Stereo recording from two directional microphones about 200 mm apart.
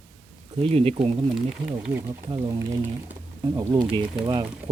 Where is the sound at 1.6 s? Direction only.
10° right (ahead or behind).